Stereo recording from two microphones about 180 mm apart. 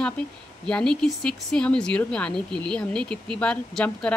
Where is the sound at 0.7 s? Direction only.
5° left (ahead or behind).